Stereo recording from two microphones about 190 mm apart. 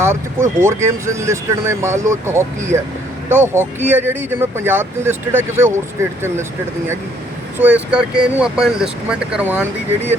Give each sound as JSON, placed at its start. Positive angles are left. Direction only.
{"t": 0.0, "sound": "speech", "side_deg": -15}
{"t": 7.6, "sound": "speech", "side_deg": -5}